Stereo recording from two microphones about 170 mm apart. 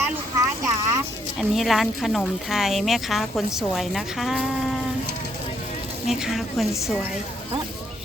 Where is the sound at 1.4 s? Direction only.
Centre (ahead or behind).